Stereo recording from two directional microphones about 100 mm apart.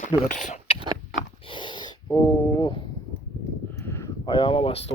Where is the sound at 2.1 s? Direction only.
50° left (ahead or behind).